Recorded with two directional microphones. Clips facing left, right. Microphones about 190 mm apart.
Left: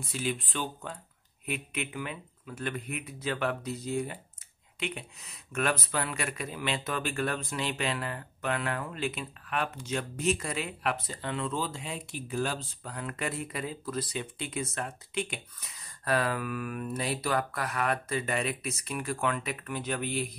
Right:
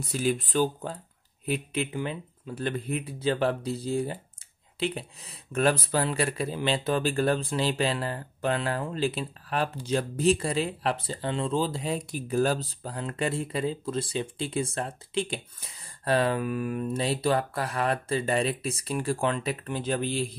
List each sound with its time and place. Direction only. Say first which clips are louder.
0.0 s speech: right 6 dB; 40° right (ahead or behind)